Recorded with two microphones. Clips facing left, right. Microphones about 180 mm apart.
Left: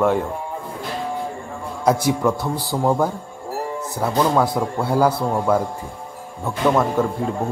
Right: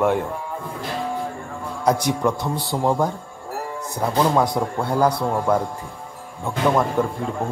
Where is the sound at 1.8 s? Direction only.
5° left (ahead or behind).